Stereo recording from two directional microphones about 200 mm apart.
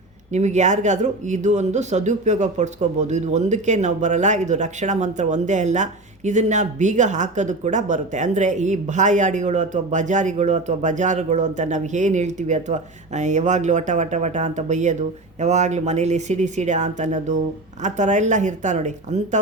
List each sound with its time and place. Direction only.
0.3 s speech: 35° right (ahead or behind)